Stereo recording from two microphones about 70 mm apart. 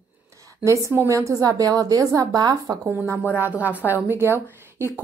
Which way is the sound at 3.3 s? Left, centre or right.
Right.